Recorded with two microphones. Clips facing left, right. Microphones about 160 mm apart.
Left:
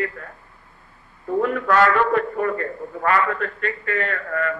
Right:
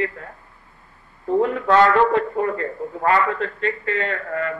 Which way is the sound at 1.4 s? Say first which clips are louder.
Right 2 dB; 25° right (ahead or behind).